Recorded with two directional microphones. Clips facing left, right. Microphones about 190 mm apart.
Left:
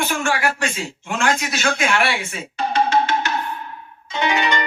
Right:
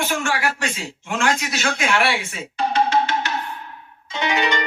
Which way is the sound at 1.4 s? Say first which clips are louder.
Left 2 dB; 50° left (ahead or behind).